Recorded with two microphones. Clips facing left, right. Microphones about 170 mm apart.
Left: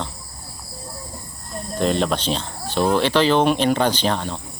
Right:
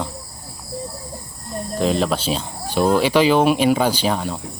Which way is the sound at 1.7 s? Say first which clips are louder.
Right 1 dB; centre (ahead or behind).